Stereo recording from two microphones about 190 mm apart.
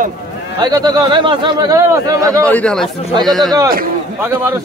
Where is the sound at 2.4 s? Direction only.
5° left (ahead or behind).